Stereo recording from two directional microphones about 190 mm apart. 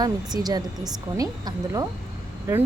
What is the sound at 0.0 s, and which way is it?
A woman's voice, 20° right (ahead or behind).